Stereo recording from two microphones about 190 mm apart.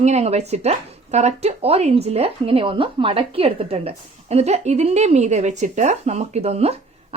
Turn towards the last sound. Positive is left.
turn(degrees=-35)  # may be behind; listen again after turning